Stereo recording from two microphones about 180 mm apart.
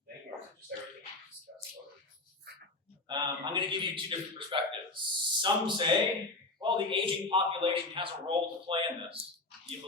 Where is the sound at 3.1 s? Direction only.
25° right (ahead or behind).